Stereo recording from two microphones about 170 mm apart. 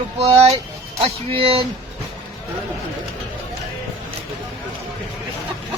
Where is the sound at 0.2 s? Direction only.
35° right (ahead or behind).